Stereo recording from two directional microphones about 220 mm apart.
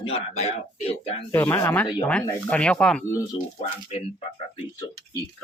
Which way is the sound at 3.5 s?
30° left (ahead or behind).